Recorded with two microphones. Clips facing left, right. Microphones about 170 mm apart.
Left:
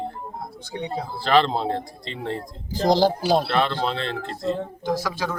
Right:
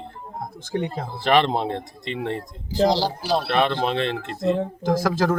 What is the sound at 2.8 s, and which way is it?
Speech, 50° left (ahead or behind).